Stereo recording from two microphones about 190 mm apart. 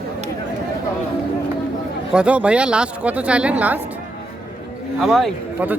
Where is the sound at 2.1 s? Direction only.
5° right (ahead or behind).